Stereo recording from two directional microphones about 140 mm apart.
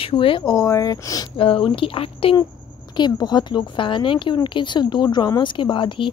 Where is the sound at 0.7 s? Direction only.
25° left (ahead or behind).